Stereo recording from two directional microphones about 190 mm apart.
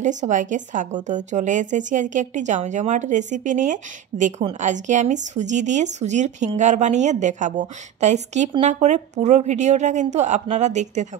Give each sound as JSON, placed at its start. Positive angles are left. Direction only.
{"t": 0.0, "sound": "speech", "side_deg": -40}